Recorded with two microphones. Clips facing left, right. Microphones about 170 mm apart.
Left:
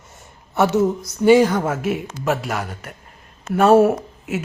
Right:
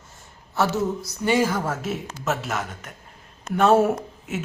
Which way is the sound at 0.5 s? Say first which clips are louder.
Left 6 dB; 20° left (ahead or behind).